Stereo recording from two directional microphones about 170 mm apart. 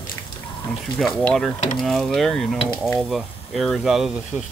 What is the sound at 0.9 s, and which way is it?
Speech, centre (ahead or behind).